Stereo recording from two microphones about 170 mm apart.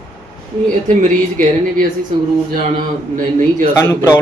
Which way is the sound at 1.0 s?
50° right (ahead or behind).